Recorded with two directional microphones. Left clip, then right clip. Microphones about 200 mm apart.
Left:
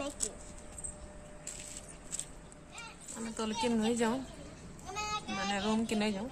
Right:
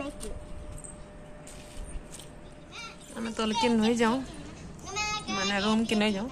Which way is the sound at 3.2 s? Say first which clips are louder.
Right 7 dB; 5° right (ahead or behind).